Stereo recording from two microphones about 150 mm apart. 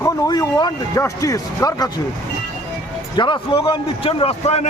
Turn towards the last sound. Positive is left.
turn(degrees=45)  # may be behind; listen again after turning